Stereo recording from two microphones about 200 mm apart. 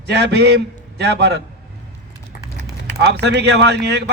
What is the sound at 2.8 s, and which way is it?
Speech, 60° right (ahead or behind).